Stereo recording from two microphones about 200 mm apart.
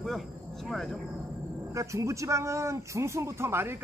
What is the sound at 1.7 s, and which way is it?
A man's voice, 15° right (ahead or behind).